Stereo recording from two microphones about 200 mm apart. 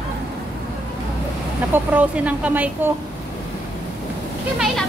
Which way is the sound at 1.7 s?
10° right (ahead or behind).